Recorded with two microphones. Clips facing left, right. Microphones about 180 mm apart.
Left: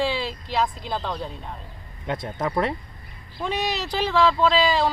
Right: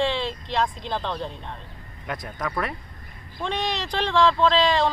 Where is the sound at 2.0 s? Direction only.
25° left (ahead or behind).